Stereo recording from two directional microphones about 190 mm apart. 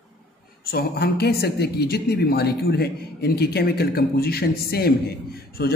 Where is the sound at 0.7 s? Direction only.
55° left (ahead or behind).